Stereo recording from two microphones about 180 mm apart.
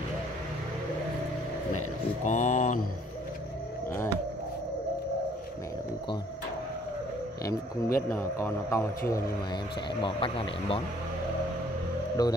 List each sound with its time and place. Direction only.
2.2 s speech: 45° left (ahead or behind)
8.1 s speech: 15° left (ahead or behind)
10.0 s speech: 30° left (ahead or behind)
12.2 s speech: 20° left (ahead or behind)